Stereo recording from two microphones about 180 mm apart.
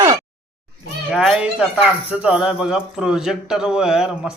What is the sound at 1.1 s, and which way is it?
Speech, centre (ahead or behind).